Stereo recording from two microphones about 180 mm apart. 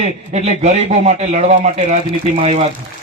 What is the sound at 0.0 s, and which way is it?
Speech, 35° right (ahead or behind).